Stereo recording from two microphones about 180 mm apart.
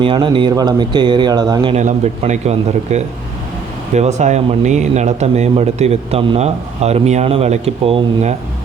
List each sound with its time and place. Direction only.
0.0 s speech: 30° right (ahead or behind)
1.7 s speech: 40° right (ahead or behind)